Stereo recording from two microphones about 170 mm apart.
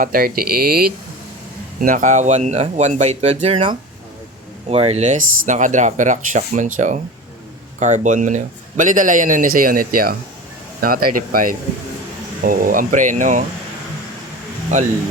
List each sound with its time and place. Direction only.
0.0 s speech: 55° right (ahead or behind)
1.8 s a man's voice: 50° right (ahead or behind)
14.7 s a man's voice: 45° right (ahead or behind)